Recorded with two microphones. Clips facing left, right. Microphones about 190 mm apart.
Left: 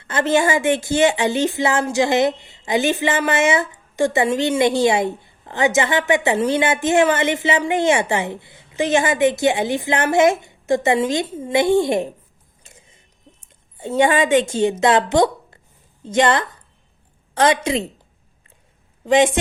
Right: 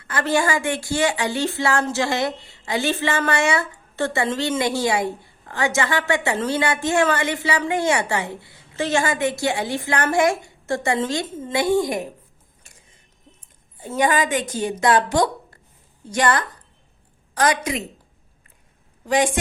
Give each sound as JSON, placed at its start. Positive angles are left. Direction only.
{"t": 0.0, "sound": "a woman's voice", "side_deg": 25}
{"t": 12.6, "sound": "mechanisms", "side_deg": 25}
{"t": 13.4, "sound": "a woman's voice", "side_deg": 25}
{"t": 19.0, "sound": "a woman's voice", "side_deg": 25}